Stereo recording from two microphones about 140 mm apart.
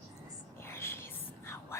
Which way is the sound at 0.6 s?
15° left (ahead or behind).